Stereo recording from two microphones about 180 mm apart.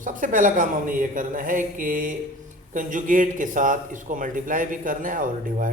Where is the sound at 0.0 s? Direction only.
50° right (ahead or behind).